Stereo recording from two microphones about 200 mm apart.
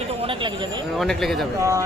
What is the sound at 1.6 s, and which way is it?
Speech, 15° right (ahead or behind).